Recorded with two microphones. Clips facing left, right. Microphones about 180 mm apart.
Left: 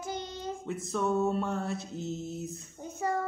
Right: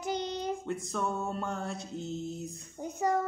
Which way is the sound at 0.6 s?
Centre (ahead or behind).